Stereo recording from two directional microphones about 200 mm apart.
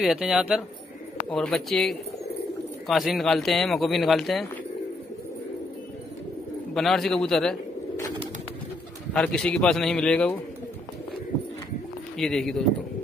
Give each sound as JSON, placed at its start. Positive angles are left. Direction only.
{"t": 0.0, "sound": "speech", "side_deg": 0}
{"t": 6.7, "sound": "speech", "side_deg": 0}
{"t": 9.1, "sound": "speech", "side_deg": 5}
{"t": 12.2, "sound": "speech", "side_deg": 0}